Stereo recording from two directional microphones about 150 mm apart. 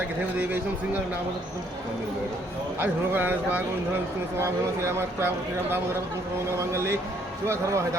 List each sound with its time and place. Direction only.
0.3 s speech: 10° right (ahead or behind)
2.8 s speech: 15° right (ahead or behind)
7.4 s a man's voice: 20° right (ahead or behind)